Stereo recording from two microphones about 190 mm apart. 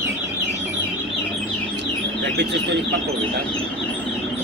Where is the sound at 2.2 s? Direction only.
65° right (ahead or behind).